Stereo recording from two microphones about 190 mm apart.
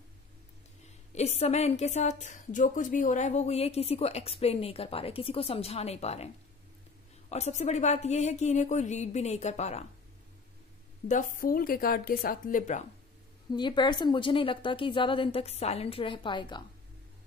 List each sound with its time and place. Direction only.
1.1 s a woman's voice: 35° left (ahead or behind)
11.1 s speech: 45° left (ahead or behind)
13.5 s a woman's voice: 25° left (ahead or behind)